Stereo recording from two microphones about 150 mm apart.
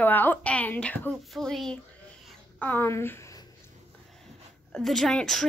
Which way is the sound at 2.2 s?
10° left (ahead or behind).